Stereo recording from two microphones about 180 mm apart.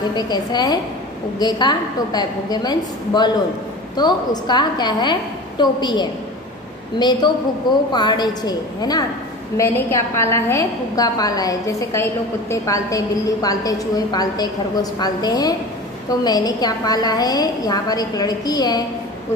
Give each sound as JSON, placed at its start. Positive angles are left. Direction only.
{"t": 0.1, "sound": "a woman's voice", "side_deg": 25}